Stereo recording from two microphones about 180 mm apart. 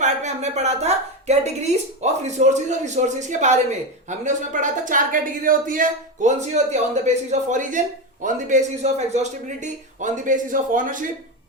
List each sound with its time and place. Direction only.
0.0 s a woman's voice: 40° right (ahead or behind)